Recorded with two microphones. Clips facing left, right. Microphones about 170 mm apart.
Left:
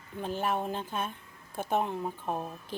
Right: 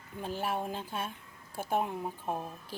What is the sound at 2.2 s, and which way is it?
Speech, 20° left (ahead or behind).